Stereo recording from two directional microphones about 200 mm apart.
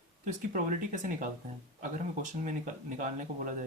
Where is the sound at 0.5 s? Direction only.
40° right (ahead or behind).